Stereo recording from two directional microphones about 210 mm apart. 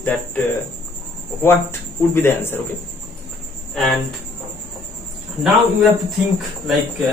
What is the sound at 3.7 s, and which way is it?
Speech, centre (ahead or behind).